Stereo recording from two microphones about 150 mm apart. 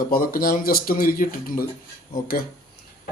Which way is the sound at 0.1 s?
70° left (ahead or behind).